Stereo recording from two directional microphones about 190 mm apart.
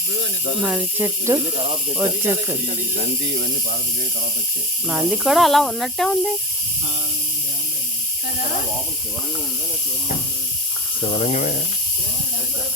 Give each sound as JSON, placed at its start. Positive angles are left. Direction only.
{"t": 0.6, "sound": "speech", "side_deg": -10}
{"t": 4.9, "sound": "speech", "side_deg": -5}
{"t": 11.0, "sound": "speech", "side_deg": 30}